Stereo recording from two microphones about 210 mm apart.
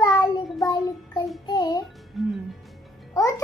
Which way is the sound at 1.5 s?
20° left (ahead or behind).